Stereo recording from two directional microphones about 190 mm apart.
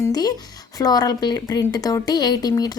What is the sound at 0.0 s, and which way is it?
Speech, 20° left (ahead or behind).